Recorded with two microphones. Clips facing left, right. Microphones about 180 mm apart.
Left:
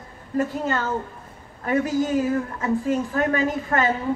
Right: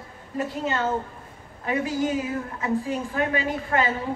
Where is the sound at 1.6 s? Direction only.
45° left (ahead or behind).